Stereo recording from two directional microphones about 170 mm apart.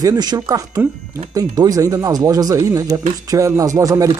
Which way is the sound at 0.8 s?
10° right (ahead or behind).